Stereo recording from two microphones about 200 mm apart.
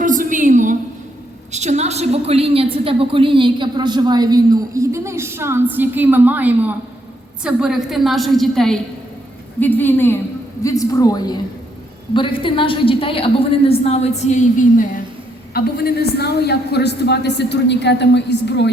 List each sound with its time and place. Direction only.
0.0 s a sound: 40° right (ahead or behind)
1.5 s a woman's voice: 35° right (ahead or behind); by 14.8 s 35° left (ahead or behind)
15.5 s a woman's voice: 50° left (ahead or behind)